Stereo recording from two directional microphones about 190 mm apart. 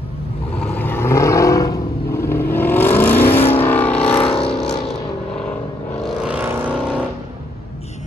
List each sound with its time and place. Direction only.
0.6 s vehicle: 10° left (ahead or behind)
4.2 s vehicle: 30° left (ahead or behind)
6.2 s vehicle: 5° right (ahead or behind)